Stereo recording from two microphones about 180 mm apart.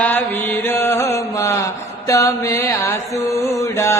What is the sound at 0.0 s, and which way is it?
Mantra, 10° left (ahead or behind).